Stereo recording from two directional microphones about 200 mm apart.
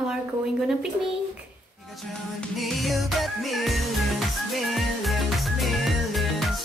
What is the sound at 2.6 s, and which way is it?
Music, centre (ahead or behind).